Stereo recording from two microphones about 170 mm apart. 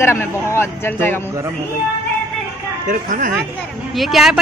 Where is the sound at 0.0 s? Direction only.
15° left (ahead or behind).